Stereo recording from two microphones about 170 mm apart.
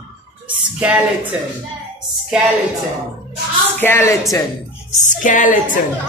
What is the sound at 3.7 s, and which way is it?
Speech, 15° left (ahead or behind).